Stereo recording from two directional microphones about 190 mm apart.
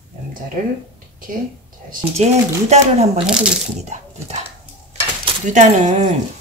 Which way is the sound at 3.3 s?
5° right (ahead or behind).